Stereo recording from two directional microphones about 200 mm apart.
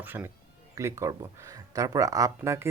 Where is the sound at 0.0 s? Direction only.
10° right (ahead or behind).